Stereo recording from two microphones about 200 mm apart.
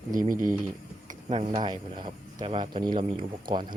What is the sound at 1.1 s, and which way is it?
Speech, 30° right (ahead or behind).